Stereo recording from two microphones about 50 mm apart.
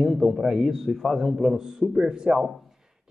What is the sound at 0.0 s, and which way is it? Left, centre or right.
A man's voice, centre.